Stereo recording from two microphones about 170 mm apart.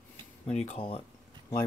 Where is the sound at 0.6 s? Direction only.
35° left (ahead or behind).